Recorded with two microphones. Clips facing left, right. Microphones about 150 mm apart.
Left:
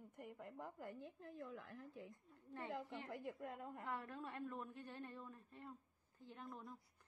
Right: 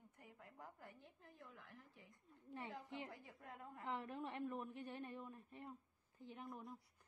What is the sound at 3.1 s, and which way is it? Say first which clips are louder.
Speech: left 8 dB; 60° left (ahead or behind).